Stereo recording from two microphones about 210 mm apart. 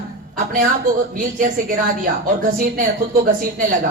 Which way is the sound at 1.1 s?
40° right (ahead or behind).